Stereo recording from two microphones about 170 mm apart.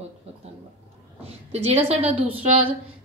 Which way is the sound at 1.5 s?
35° right (ahead or behind).